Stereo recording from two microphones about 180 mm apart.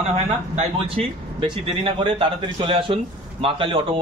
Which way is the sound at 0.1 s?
35° right (ahead or behind).